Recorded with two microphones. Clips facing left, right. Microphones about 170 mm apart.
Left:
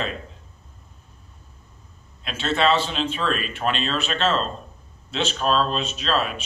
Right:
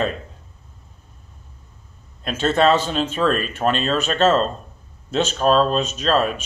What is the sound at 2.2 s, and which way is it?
Speech, 45° right (ahead or behind).